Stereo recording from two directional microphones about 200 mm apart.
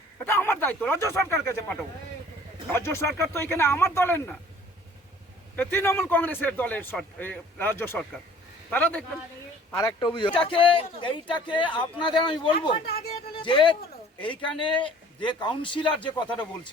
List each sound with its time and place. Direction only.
0.3 s a man's voice: 10° left (ahead or behind)
2.7 s a man's voice: 10° left (ahead or behind)
5.5 s a man's voice: 10° left (ahead or behind)
9.7 s speech: 20° left (ahead or behind)
13.1 s music: 25° left (ahead or behind)
14.2 s speech: 25° left (ahead or behind)